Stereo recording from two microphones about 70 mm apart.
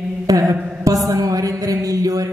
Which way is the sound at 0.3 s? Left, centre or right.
Right.